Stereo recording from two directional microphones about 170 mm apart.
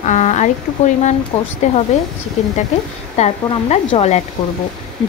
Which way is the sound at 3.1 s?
40° left (ahead or behind).